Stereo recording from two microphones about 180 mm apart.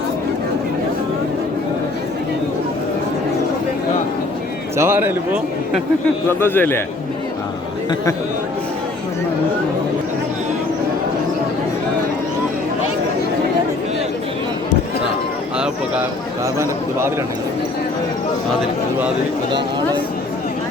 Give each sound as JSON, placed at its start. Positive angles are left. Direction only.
{"t": 4.8, "sound": "a man's voice", "side_deg": -10}
{"t": 6.4, "sound": "a man's voice", "side_deg": 10}
{"t": 15.5, "sound": "a sound", "side_deg": -5}